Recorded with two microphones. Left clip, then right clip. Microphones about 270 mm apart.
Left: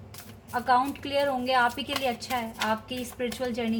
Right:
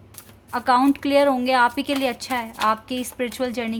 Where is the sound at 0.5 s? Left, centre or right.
Right.